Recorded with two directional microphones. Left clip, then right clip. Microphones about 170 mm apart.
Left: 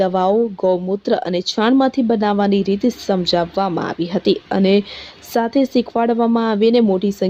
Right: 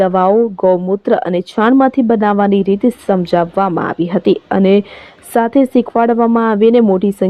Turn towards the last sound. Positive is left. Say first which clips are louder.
# right 4 dB
turn(degrees=-20)  # may be behind; listen again after turning